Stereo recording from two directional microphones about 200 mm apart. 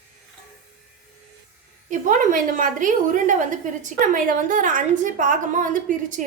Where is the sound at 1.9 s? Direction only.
40° right (ahead or behind).